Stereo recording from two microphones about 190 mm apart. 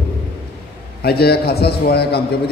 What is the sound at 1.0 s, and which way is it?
A man's voice, 55° left (ahead or behind).